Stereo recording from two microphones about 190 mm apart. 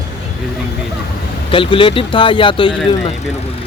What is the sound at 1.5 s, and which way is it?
Speech, 25° left (ahead or behind).